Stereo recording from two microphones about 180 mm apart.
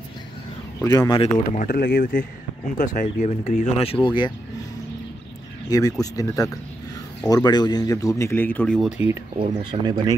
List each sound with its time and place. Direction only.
0.8 s speech: 20° left (ahead or behind)
1.6 s speech: 50° left (ahead or behind); by 4.3 s 25° left (ahead or behind)
5.7 s speech: 20° left (ahead or behind)
8.5 s speech: 5° left (ahead or behind)
9.4 s speech: 25° right (ahead or behind)